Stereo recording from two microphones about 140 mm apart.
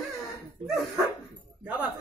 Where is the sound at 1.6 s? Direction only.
10° right (ahead or behind).